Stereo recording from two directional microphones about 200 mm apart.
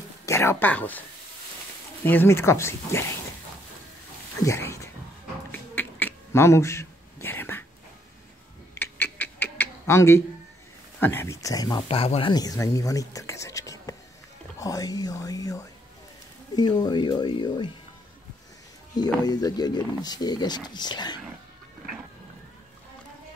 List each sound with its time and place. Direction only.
0.2 s speech: 15° left (ahead or behind)
2.0 s speech: 10° left (ahead or behind)
4.4 s speech: 15° left (ahead or behind)
5.5 s a sound: 10° left (ahead or behind)
8.7 s a sound: 10° left (ahead or behind)
11.0 s speech: 10° left (ahead or behind)
19.2 s speech: 20° left (ahead or behind)